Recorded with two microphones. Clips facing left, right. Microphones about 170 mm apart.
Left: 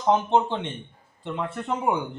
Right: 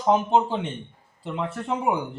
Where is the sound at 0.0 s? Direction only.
10° right (ahead or behind).